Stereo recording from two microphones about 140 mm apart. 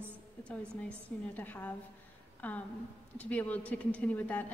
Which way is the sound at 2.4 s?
10° left (ahead or behind).